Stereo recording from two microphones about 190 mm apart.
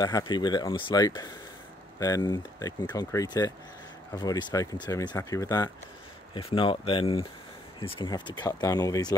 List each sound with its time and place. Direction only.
0.0 s speech: 20° left (ahead or behind)